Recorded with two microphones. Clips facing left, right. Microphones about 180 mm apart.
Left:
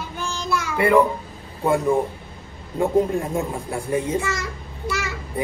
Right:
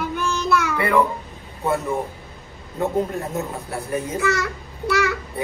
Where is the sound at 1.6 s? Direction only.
15° left (ahead or behind).